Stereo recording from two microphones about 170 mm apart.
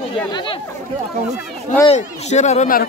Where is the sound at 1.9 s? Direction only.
40° left (ahead or behind).